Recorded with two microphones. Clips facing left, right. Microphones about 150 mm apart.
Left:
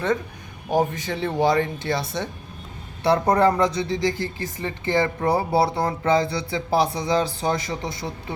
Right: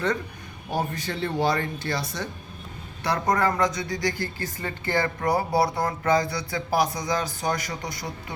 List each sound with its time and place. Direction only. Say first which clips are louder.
0.7 s speech: left 6 dB; 15° left (ahead or behind)